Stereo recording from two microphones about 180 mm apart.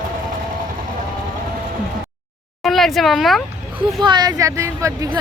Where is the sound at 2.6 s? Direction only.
Centre (ahead or behind).